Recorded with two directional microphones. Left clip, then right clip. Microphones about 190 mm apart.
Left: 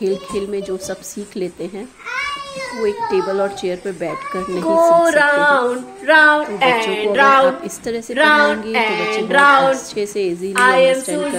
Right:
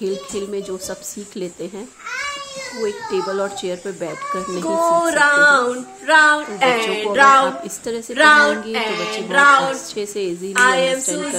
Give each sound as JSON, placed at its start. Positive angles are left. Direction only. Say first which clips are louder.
{"t": 0.0, "sound": "speech", "louder": "left 4 dB", "side_deg": 5}
{"t": 2.8, "sound": "speech", "louder": "left 4 dB", "side_deg": 5}
{"t": 4.6, "sound": "female singing", "louder": "left 5 dB", "side_deg": -10}
{"t": 7.4, "sound": "a woman's voice", "louder": "left 5 dB", "side_deg": 5}
{"t": 8.1, "sound": "female singing", "louder": "right 1 dB", "side_deg": -15}
{"t": 9.1, "sound": "speech", "louder": "left 1 dB", "side_deg": 0}
{"t": 10.5, "sound": "female singing", "louder": "left 3 dB", "side_deg": -10}